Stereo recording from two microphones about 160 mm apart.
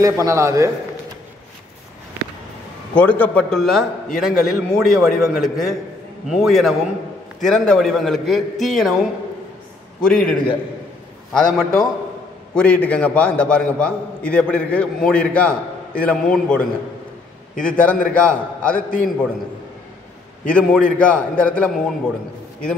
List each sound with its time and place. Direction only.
0.0 s a man's voice: 20° right (ahead or behind)
2.9 s a man's voice: 10° left (ahead or behind)
10.0 s a man's voice: 5° left (ahead or behind)
11.3 s a man's voice: 5° left (ahead or behind)
17.6 s a man's voice: 10° left (ahead or behind)
18.8 s a man's voice: 60° left (ahead or behind)
20.4 s a man's voice: 5° left (ahead or behind)